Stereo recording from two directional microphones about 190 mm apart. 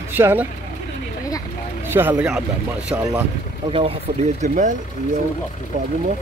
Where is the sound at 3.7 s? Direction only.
30° right (ahead or behind).